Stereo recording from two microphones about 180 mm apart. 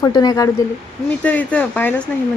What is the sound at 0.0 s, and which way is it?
Speech, 20° left (ahead or behind).